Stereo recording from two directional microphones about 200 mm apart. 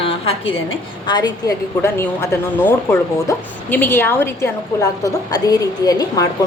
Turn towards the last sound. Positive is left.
turn(degrees=20)  # may be behind; listen again after turning